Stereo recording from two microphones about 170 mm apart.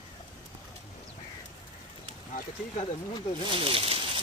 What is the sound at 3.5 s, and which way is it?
Speech, 30° right (ahead or behind).